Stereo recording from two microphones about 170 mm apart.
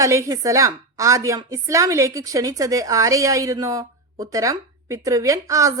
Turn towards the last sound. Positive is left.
turn(degrees=-20)  # may be behind; listen again after turning